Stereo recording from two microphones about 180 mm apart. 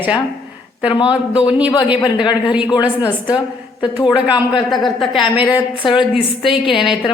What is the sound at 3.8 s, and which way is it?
Speech, 25° left (ahead or behind).